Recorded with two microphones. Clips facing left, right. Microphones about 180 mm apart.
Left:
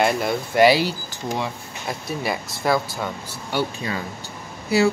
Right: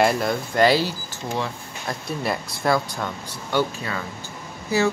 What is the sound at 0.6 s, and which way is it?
Speech, 15° left (ahead or behind).